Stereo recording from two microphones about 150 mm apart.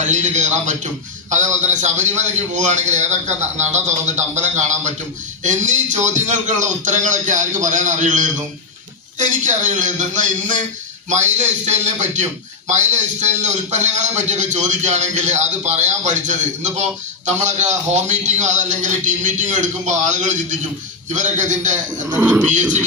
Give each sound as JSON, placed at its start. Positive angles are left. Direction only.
{"t": 0.1, "sound": "a man's voice", "side_deg": -50}
{"t": 22.1, "sound": "speech", "side_deg": -10}